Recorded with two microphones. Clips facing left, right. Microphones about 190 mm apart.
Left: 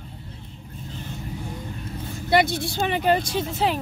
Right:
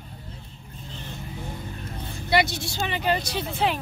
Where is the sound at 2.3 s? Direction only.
55° left (ahead or behind).